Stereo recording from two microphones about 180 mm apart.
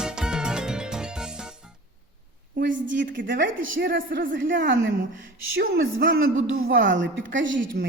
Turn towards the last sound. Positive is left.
turn(degrees=-90)